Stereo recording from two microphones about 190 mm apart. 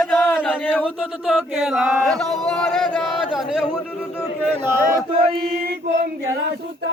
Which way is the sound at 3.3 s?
Centre (ahead or behind).